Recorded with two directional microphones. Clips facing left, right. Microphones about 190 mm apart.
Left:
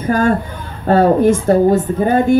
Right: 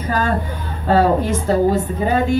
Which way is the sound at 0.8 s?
50° left (ahead or behind).